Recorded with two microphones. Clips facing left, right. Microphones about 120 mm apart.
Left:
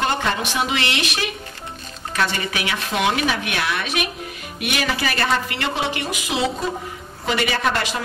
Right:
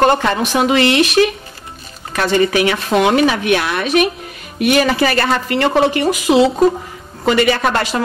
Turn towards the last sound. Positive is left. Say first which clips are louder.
# right 8 dB
turn(degrees=-50)  # may be behind; listen again after turning